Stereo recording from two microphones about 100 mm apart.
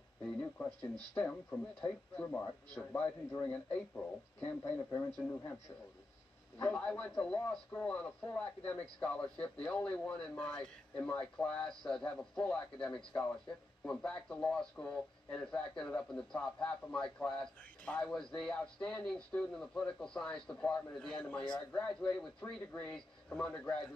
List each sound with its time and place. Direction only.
0.2 s a sound: 15° left (ahead or behind)
1.1 s speech: 15° left (ahead or behind)
6.6 s speech: 10° left (ahead or behind)